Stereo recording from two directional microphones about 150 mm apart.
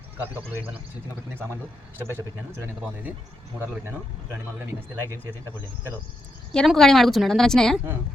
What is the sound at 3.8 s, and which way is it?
Speech, 15° right (ahead or behind).